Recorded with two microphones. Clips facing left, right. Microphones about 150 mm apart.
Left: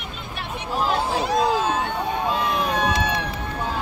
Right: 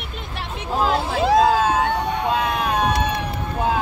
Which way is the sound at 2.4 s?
55° right (ahead or behind).